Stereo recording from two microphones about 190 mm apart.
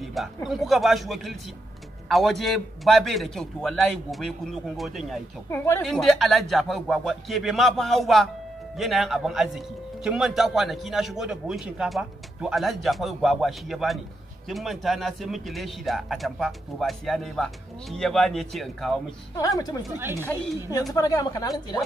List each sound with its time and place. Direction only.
0.0 s a man's voice: centre (ahead or behind)
5.5 s a woman's voice: 10° left (ahead or behind)
5.9 s a man's voice: centre (ahead or behind)
20.2 s a woman's voice: 10° left (ahead or behind)